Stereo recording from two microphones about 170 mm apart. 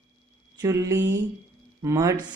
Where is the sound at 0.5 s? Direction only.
20° right (ahead or behind).